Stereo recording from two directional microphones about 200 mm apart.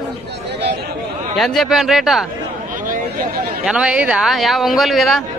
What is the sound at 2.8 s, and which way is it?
Vehicle, 45° right (ahead or behind).